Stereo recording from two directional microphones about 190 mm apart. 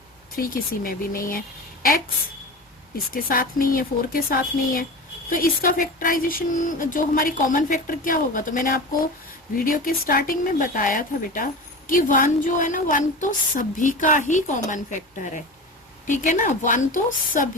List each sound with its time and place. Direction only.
0.3 s speech: 50° left (ahead or behind)
3.1 s speech: 50° left (ahead or behind)